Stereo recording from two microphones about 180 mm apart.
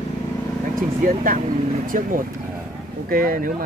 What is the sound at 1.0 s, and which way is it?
Speech, 50° right (ahead or behind).